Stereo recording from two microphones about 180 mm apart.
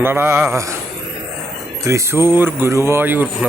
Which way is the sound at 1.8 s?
15° right (ahead or behind).